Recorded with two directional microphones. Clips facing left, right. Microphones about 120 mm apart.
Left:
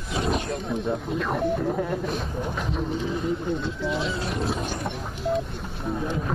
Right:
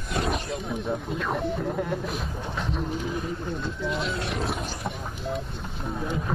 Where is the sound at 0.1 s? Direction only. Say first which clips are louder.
Left 2 dB; centre (ahead or behind).